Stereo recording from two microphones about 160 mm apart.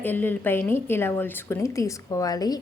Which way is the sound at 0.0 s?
10° left (ahead or behind).